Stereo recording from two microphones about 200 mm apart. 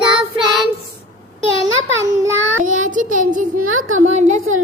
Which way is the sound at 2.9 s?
40° right (ahead or behind).